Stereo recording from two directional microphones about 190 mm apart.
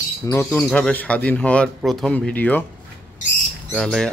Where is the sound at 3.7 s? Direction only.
5° left (ahead or behind).